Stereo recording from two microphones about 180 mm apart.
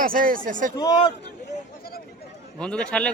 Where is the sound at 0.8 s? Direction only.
25° left (ahead or behind).